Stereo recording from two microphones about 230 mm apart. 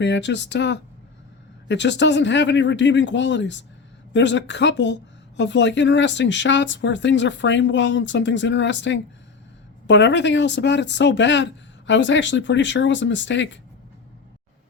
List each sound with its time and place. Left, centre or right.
0.0 s speech: left